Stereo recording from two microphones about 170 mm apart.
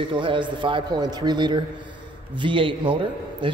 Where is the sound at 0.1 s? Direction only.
30° right (ahead or behind).